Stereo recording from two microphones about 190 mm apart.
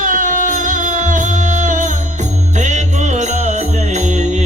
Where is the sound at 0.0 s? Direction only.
45° right (ahead or behind).